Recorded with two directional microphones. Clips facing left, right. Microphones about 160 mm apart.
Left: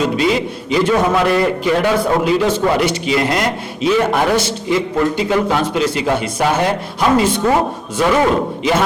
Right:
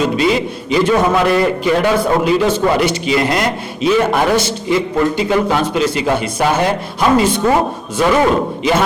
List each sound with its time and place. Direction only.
0.0 s a man's voice: 10° right (ahead or behind)
2.2 s a man's voice: 15° right (ahead or behind)
2.6 s speech: 25° right (ahead or behind)
2.8 s a man's voice: 10° right (ahead or behind)
4.4 s a man's voice: 5° right (ahead or behind)
7.4 s speech: 25° right (ahead or behind)